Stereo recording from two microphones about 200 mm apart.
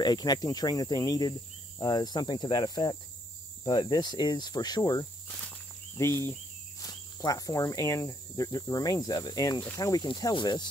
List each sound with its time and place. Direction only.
0.0 s cricket: 20° left (ahead or behind)